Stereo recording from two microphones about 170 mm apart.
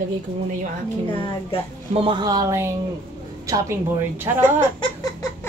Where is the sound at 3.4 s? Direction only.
15° right (ahead or behind).